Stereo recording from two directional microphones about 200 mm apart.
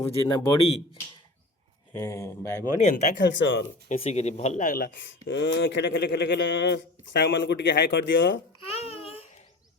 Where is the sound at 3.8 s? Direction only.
30° left (ahead or behind).